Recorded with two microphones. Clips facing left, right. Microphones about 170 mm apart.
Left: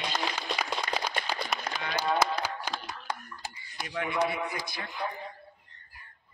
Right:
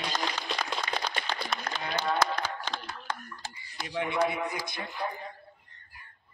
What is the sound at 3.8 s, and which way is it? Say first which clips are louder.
A man's voice: right 1 dB; 25° right (ahead or behind).